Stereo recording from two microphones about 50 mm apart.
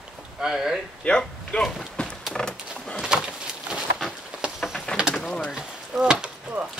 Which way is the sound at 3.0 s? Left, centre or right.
Centre.